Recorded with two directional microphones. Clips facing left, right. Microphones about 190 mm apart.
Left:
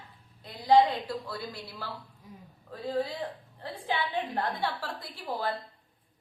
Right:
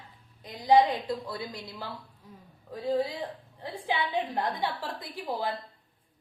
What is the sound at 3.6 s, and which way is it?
A woman's voice, 15° right (ahead or behind).